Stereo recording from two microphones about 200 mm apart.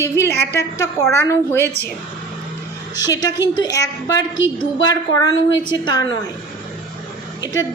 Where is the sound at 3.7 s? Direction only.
20° left (ahead or behind).